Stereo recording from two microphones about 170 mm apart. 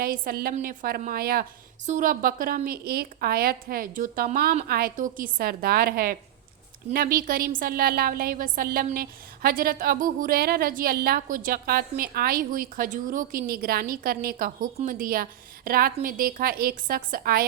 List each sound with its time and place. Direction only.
0.0 s a woman's voice: 60° right (ahead or behind)